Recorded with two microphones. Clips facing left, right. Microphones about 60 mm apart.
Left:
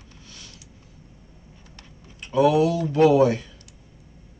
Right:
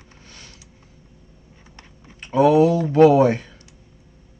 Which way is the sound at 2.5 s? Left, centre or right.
Right.